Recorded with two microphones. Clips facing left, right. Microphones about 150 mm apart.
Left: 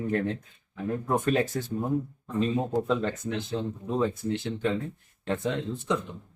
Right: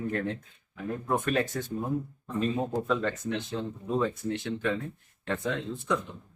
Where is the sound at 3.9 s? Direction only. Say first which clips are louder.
Left 1 dB; 25° left (ahead or behind).